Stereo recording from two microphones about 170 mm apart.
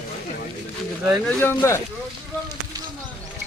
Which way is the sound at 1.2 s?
15° left (ahead or behind).